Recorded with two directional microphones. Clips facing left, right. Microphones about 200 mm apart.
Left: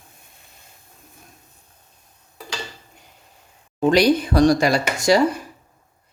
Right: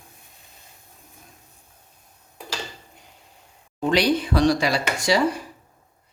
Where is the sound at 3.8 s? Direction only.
40° left (ahead or behind).